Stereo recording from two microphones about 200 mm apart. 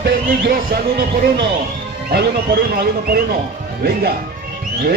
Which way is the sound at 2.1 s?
50° right (ahead or behind).